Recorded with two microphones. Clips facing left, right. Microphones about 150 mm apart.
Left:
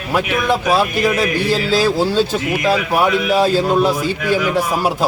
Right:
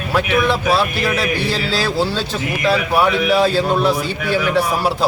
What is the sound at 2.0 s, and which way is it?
Speech, 45° left (ahead or behind).